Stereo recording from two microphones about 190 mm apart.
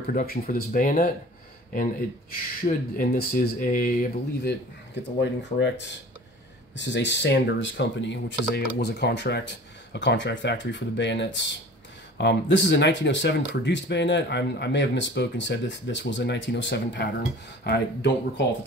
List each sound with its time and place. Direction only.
0.1 s speech: 45° left (ahead or behind)
2.6 s speech: 50° left (ahead or behind)